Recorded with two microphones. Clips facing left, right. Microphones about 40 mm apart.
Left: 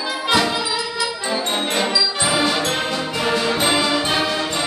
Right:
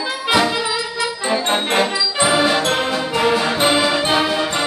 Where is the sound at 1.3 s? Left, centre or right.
Right; by 4.4 s centre.